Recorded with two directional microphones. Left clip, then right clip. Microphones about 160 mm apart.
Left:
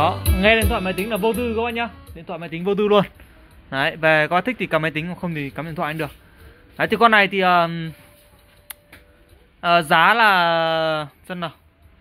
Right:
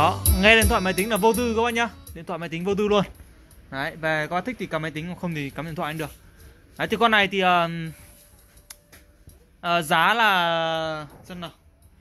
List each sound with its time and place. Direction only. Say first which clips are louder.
0.3 s speech: right 1 dB; 5° right (ahead or behind)
0.7 s speech: even; 20° right (ahead or behind)
2.5 s speech: left 5 dB; centre (ahead or behind)
3.7 s speech: left 8 dB; 15° left (ahead or behind)
5.2 s speech: left 3 dB; 5° left (ahead or behind)
8.7 s a sound: left 6 dB; 25° left (ahead or behind)
9.6 s speech: left 5 dB; 15° left (ahead or behind)
11.0 s speech: left 9 dB; 40° left (ahead or behind)